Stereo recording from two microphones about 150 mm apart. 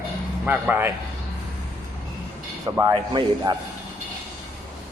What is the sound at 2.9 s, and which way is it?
Speech, 30° right (ahead or behind).